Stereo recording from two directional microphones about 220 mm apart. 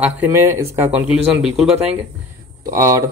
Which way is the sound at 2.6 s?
15° right (ahead or behind).